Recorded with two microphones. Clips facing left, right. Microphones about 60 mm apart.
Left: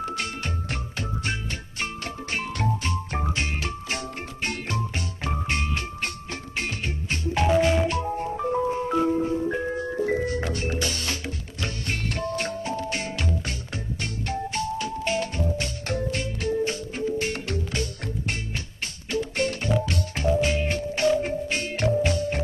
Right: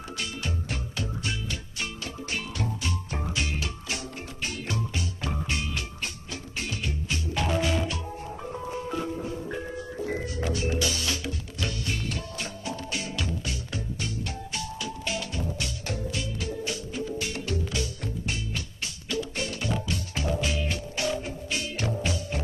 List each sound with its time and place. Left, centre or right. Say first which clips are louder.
0.2 s music: left 3 dB; left
0.9 s music: left 3 dB; left
3.3 s music: left 3 dB; left
11.9 s music: left 5 dB; left